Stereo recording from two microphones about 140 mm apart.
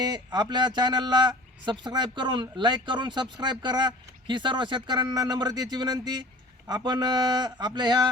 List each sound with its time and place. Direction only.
0.0 s speech: 30° right (ahead or behind)